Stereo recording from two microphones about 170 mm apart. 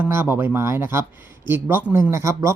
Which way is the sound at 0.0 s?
10° right (ahead or behind).